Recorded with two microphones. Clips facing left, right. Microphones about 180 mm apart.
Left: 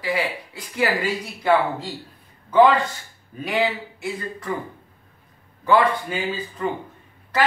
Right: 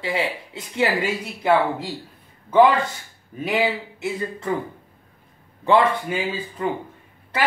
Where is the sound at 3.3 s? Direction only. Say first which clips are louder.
Right 1 dB; 20° right (ahead or behind).